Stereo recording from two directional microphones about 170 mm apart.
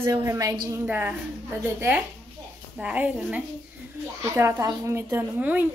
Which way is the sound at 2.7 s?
10° right (ahead or behind).